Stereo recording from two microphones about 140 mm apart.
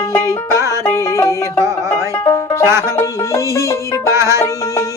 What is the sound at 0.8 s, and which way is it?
Music, 20° left (ahead or behind).